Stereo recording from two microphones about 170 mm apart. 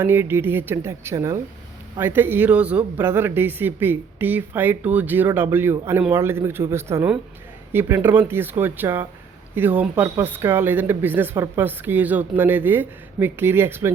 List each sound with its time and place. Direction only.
0.0 s speech: 15° right (ahead or behind)